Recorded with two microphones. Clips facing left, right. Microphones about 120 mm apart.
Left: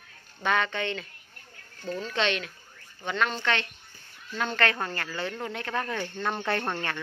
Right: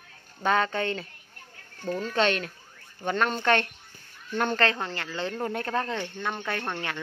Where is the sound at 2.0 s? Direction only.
45° right (ahead or behind).